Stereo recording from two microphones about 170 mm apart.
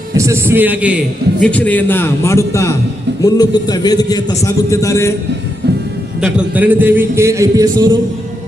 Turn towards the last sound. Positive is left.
turn(degrees=-20)  # may be behind; listen again after turning